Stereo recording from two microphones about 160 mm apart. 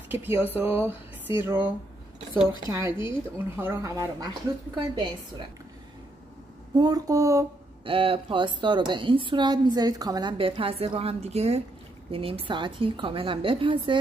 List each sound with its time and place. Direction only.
0.1 s speech: 15° right (ahead or behind)
3.1 s a woman's voice: 15° right (ahead or behind)
6.8 s a woman's voice: 20° right (ahead or behind)
7.8 s a woman's voice: 35° right (ahead or behind)
10.3 s a woman's voice: 35° right (ahead or behind)